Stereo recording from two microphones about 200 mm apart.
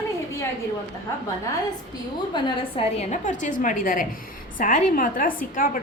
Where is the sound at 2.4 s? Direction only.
25° left (ahead or behind); by 5.8 s 40° left (ahead or behind).